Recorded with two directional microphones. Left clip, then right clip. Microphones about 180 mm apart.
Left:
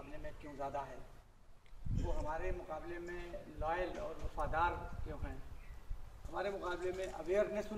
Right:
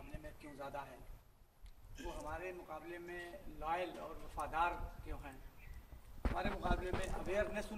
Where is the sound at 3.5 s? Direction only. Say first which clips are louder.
Left 2 dB; 45° right (ahead or behind).